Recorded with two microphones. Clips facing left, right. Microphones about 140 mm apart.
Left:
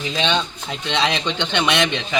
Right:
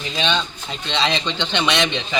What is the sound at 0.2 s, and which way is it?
A man's voice, 15° left (ahead or behind).